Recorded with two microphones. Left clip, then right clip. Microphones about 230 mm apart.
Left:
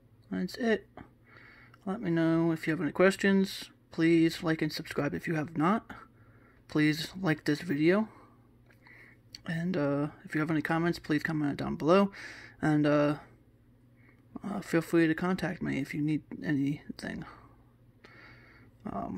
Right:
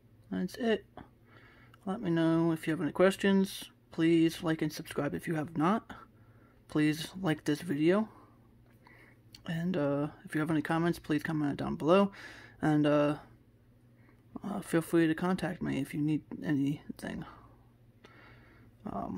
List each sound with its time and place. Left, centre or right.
0.3 s speech: centre
14.3 s speech: centre
18.9 s speech: centre